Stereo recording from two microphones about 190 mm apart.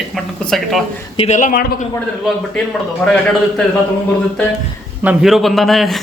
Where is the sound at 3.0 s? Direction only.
5° left (ahead or behind).